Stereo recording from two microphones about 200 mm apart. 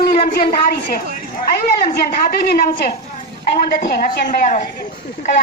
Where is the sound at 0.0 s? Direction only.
50° left (ahead or behind).